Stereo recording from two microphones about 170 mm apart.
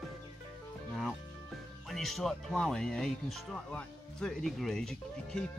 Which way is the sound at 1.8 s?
Centre (ahead or behind).